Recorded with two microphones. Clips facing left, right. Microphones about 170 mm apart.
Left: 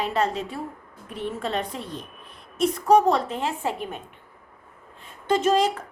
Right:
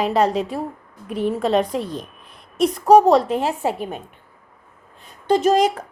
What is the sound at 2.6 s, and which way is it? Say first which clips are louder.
Speech: right 5 dB; 35° right (ahead or behind).